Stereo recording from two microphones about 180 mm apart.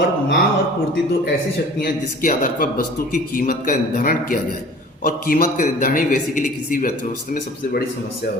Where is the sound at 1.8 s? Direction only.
50° left (ahead or behind).